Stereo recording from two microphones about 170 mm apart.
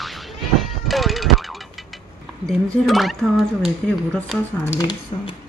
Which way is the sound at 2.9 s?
Centre (ahead or behind).